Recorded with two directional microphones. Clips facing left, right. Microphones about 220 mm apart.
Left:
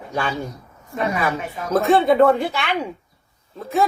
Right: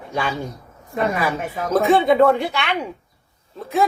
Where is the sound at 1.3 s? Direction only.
50° right (ahead or behind).